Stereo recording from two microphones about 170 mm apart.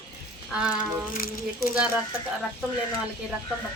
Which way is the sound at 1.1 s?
60° left (ahead or behind).